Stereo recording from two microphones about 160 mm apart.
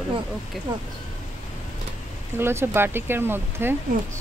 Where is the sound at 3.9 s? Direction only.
60° right (ahead or behind).